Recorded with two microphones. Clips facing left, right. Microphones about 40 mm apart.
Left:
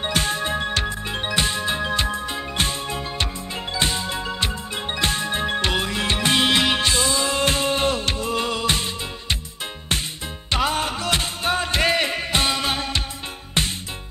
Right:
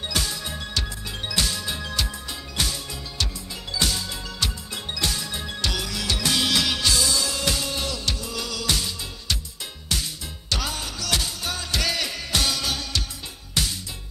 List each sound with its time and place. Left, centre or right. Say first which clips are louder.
0.0 s music: left 6 dB; left
10.5 s music: left 7 dB; left